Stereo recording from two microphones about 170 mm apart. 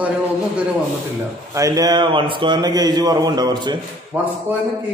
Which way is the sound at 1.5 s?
20° right (ahead or behind).